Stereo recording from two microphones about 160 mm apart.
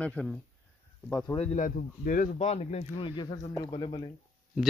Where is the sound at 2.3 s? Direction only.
40° left (ahead or behind).